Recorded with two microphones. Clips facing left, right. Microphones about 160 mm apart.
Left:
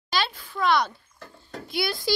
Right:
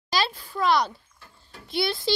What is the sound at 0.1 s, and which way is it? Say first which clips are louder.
Speech: right 1 dB; 35° right (ahead or behind).